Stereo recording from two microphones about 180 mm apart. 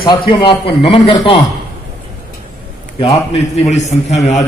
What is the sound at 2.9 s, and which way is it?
A man's voice, 35° left (ahead or behind).